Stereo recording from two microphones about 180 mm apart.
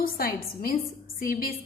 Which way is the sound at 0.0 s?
55° left (ahead or behind).